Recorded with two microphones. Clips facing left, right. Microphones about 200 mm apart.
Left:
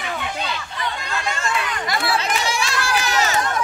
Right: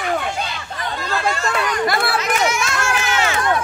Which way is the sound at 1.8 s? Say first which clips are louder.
Right 2 dB; 60° right (ahead or behind).